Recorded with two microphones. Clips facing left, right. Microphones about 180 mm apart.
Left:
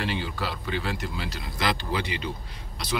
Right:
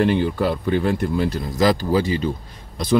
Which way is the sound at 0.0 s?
50° right (ahead or behind).